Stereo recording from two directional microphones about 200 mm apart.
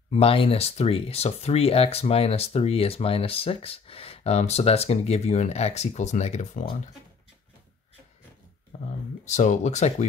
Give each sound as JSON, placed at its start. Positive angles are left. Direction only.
{"t": 0.1, "sound": "speech", "side_deg": 30}
{"t": 8.7, "sound": "a sound", "side_deg": 35}
{"t": 9.2, "sound": "speech", "side_deg": 35}